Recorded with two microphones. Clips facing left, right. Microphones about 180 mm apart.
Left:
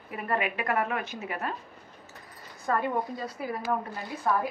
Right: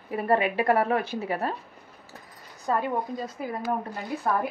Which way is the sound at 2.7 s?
20° right (ahead or behind).